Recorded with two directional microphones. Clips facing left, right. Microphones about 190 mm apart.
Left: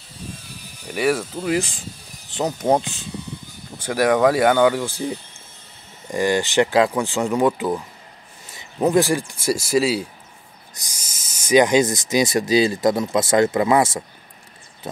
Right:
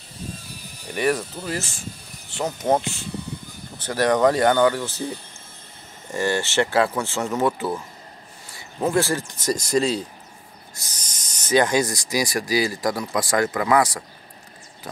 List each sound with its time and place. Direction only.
0.9 s speech: 10° left (ahead or behind); by 14.0 s 25° left (ahead or behind)